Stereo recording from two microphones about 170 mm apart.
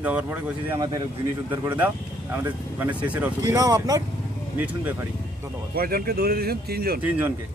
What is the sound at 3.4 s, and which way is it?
Speech, 20° right (ahead or behind).